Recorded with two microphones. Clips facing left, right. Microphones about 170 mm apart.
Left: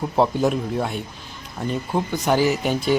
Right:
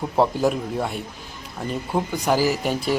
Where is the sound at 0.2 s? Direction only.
Centre (ahead or behind).